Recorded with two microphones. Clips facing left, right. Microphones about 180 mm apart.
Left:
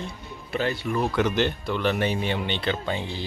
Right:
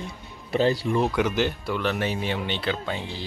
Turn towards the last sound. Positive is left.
turn(degrees=0)  # may be behind; listen again after turning